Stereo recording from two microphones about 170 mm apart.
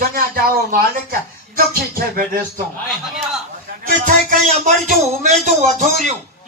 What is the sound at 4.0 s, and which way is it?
Speech, 50° right (ahead or behind).